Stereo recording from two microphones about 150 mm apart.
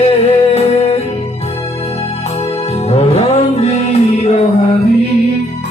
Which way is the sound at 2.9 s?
45° left (ahead or behind).